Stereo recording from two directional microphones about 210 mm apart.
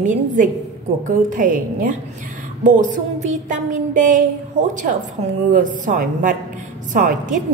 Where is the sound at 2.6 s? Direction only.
35° right (ahead or behind).